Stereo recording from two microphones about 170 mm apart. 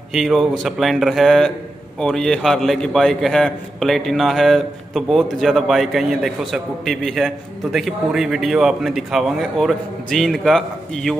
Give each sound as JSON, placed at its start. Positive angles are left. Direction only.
{"t": 0.1, "sound": "a man's voice", "side_deg": 0}